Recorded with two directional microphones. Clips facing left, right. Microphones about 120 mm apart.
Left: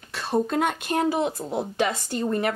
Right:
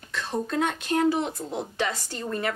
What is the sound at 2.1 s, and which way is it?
Speech, 20° left (ahead or behind).